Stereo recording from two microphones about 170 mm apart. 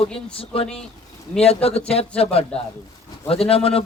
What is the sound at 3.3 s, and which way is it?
Speech, 35° left (ahead or behind).